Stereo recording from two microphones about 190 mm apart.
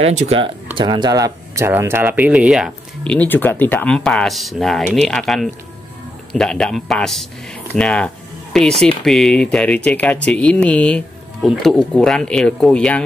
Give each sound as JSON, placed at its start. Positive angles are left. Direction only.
{"t": 0.0, "sound": "speech", "side_deg": -35}
{"t": 0.7, "sound": "speech", "side_deg": -25}